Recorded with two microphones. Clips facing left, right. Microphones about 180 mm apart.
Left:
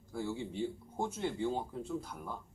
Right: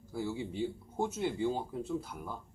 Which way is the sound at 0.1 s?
5° right (ahead or behind).